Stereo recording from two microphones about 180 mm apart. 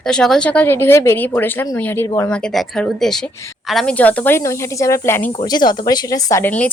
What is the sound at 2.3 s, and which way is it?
A woman's voice, 5° left (ahead or behind).